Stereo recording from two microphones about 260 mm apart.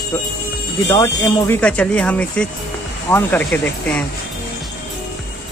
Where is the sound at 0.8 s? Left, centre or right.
Centre.